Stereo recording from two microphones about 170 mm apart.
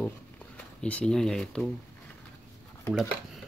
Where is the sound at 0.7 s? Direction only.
5° left (ahead or behind).